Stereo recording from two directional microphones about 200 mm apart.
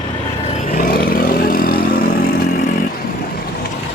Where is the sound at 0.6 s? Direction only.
45° left (ahead or behind).